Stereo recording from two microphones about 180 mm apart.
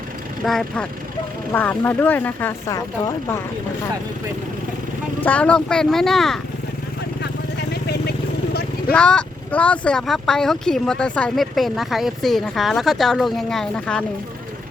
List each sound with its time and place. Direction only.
0.4 s speech: centre (ahead or behind); by 3.4 s 15° left (ahead or behind)
5.2 s speech: 5° left (ahead or behind)
7.7 s vehicle: 65° left (ahead or behind)
8.9 s speech: 5° left (ahead or behind)